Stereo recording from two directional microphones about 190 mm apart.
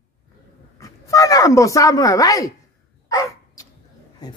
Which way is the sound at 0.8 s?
15° left (ahead or behind).